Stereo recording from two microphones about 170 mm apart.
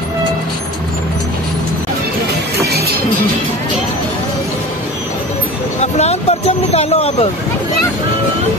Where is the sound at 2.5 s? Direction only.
70° right (ahead or behind).